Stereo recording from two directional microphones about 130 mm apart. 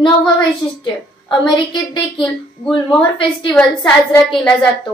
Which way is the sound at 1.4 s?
35° left (ahead or behind).